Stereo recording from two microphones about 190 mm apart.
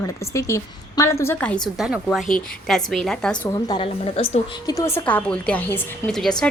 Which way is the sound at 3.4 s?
25° left (ahead or behind).